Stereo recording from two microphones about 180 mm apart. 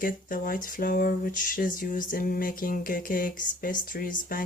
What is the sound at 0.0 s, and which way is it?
Speech, 50° left (ahead or behind).